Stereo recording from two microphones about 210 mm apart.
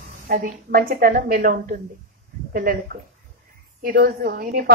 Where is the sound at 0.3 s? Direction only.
45° right (ahead or behind).